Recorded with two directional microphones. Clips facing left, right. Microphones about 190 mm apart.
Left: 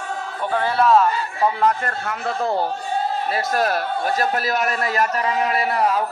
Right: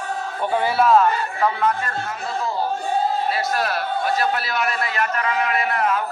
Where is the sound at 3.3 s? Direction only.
45° left (ahead or behind).